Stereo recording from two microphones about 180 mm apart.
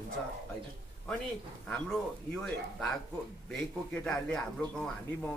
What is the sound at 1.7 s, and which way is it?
A man's voice, 5° left (ahead or behind).